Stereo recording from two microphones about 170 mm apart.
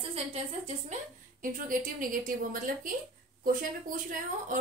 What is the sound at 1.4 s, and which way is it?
A woman's voice, 50° right (ahead or behind).